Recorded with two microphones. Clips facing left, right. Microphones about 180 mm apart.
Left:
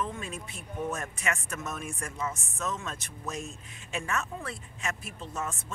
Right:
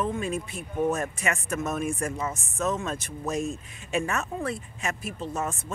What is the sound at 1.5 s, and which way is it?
Speech, 50° right (ahead or behind).